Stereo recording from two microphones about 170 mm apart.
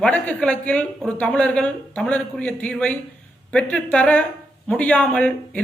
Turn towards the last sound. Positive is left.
turn(degrees=5)  # may be behind; listen again after turning